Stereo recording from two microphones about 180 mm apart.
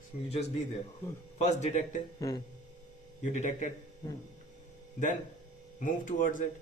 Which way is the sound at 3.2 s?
45° left (ahead or behind).